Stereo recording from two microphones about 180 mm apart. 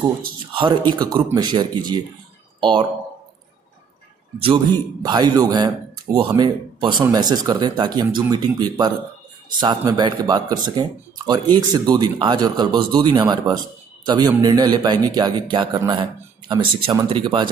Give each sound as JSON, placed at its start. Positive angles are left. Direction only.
{"t": 0.6, "sound": "speech", "side_deg": -25}
{"t": 5.0, "sound": "speech", "side_deg": -25}